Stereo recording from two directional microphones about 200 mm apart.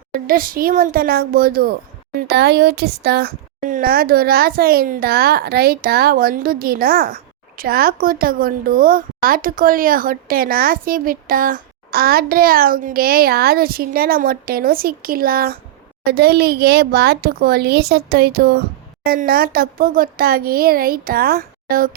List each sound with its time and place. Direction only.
0.1 s speech: 45° right (ahead or behind)